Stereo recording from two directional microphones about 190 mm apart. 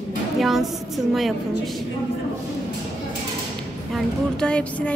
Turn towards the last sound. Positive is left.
turn(degrees=5)  # may be behind; listen again after turning